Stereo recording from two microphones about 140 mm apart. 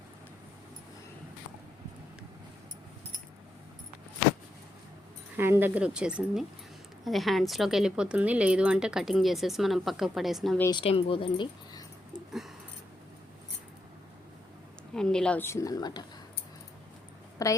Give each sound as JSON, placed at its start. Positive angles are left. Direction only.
{"t": 5.4, "sound": "speech", "side_deg": -15}
{"t": 10.8, "sound": "speech", "side_deg": 40}
{"t": 12.1, "sound": "a sound", "side_deg": -5}
{"t": 14.9, "sound": "a woman's voice", "side_deg": 5}
{"t": 17.4, "sound": "a woman's voice", "side_deg": 25}